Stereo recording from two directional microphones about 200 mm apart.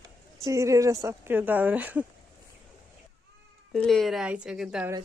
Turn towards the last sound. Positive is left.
turn(degrees=-5)  # may be behind; listen again after turning